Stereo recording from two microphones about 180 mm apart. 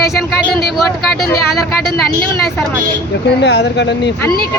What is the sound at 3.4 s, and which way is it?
Speech, 70° left (ahead or behind).